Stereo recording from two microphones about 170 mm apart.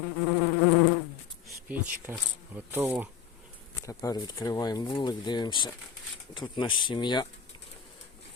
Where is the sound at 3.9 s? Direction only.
20° left (ahead or behind).